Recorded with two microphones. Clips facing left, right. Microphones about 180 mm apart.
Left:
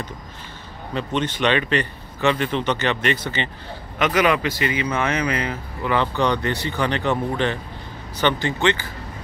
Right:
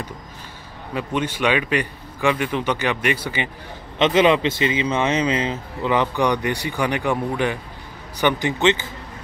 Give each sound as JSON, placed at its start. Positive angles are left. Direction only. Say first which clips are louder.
{"t": 0.9, "sound": "a man's voice", "louder": "even", "side_deg": -10}
{"t": 4.0, "sound": "a man's voice", "louder": "right 3 dB", "side_deg": -25}